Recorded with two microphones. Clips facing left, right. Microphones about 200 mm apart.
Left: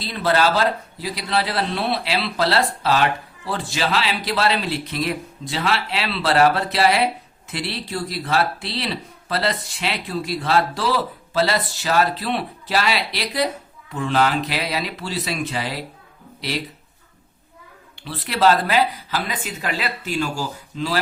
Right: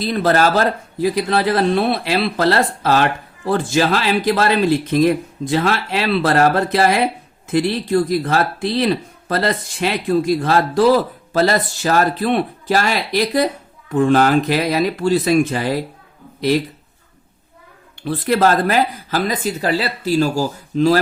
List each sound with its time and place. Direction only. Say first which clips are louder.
0.0 s speech: right 4 dB; 45° right (ahead or behind)
18.0 s speech: right 3 dB; 50° right (ahead or behind)